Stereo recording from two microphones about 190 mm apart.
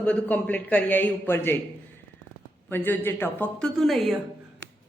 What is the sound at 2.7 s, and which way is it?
A woman's voice, 10° left (ahead or behind).